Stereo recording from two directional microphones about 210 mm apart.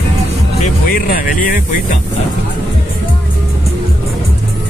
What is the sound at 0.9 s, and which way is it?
Speech, 45° left (ahead or behind).